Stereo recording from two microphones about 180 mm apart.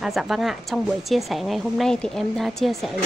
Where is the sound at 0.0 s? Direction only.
Centre (ahead or behind).